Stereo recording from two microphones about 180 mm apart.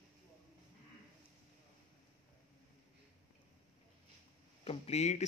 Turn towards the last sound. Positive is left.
turn(degrees=35)  # may be behind; listen again after turning